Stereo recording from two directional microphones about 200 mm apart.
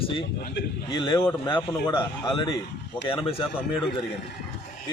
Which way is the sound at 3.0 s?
25° left (ahead or behind).